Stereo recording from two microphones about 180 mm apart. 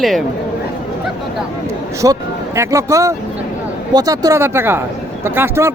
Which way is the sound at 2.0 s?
20° right (ahead or behind).